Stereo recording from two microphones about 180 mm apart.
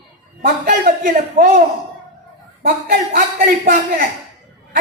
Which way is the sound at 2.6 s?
55° right (ahead or behind).